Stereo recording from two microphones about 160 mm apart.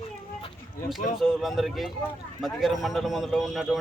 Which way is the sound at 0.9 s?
Centre (ahead or behind).